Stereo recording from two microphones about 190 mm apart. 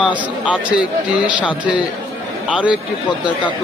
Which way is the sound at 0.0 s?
5° right (ahead or behind).